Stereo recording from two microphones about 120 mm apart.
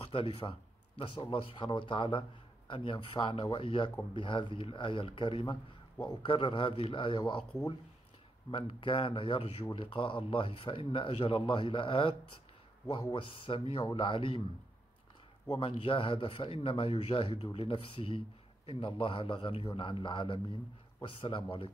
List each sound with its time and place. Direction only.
0.1 s speech: 50° left (ahead or behind)
8.5 s speech: 45° left (ahead or behind)
15.6 s speech: 45° left (ahead or behind)